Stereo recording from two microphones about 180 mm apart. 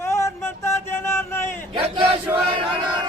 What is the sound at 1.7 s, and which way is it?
Battle cry, 30° right (ahead or behind).